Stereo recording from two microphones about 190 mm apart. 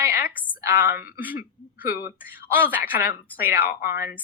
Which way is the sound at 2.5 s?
10° right (ahead or behind).